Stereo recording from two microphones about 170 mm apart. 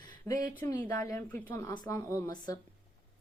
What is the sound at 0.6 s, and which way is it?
A woman's voice, 15° left (ahead or behind).